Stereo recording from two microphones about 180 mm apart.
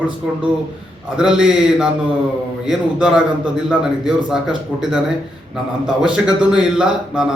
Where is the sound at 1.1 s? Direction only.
5° right (ahead or behind).